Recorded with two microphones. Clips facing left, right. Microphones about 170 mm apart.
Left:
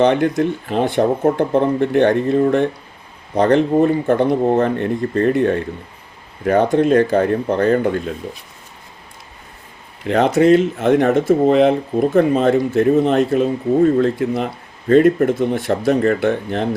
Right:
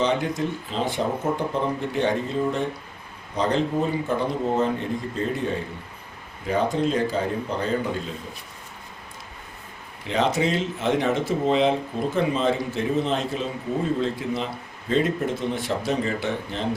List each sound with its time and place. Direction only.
0.0 s speech: 60° left (ahead or behind)
10.1 s speech: 55° left (ahead or behind)